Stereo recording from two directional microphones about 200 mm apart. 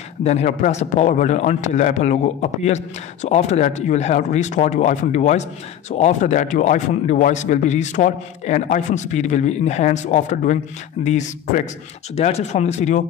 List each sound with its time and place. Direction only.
0.2 s a man's voice: 35° left (ahead or behind)